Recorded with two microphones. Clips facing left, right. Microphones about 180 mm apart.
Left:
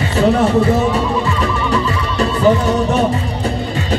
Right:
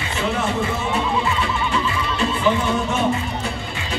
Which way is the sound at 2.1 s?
40° left (ahead or behind).